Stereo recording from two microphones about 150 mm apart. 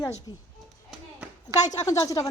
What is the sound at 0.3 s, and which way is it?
Speech, 25° left (ahead or behind).